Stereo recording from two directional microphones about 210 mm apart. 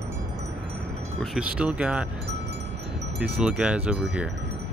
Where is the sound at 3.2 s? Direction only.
5° right (ahead or behind).